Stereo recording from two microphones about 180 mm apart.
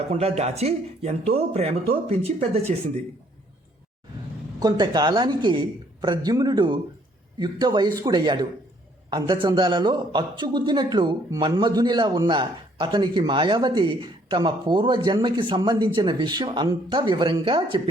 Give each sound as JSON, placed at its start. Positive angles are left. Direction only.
{"t": 0.1, "sound": "speech", "side_deg": -35}
{"t": 4.6, "sound": "a man's voice", "side_deg": -25}